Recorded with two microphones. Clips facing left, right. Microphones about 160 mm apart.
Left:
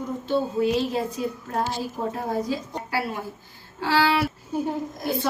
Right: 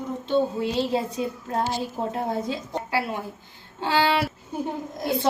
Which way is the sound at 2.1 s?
25° right (ahead or behind).